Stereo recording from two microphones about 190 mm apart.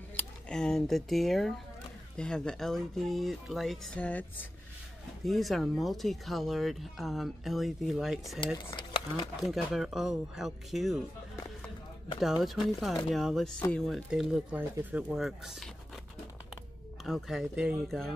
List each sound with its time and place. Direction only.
0.1 s speech: 5° left (ahead or behind)
8.5 s speech: 25° left (ahead or behind)
9.4 s speech: centre (ahead or behind)
12.4 s speech: centre (ahead or behind)
17.0 s speech: centre (ahead or behind)